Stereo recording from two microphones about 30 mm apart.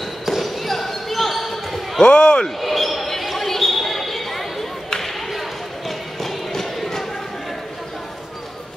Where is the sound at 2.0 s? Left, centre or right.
Left.